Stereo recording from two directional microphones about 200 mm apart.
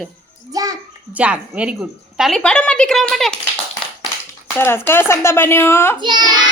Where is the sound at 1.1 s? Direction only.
5° right (ahead or behind).